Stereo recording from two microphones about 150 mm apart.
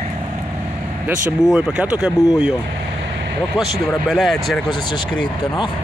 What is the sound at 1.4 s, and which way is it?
Speech, 5° right (ahead or behind).